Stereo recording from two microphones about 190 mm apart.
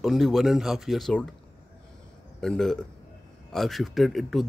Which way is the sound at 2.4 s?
5° left (ahead or behind).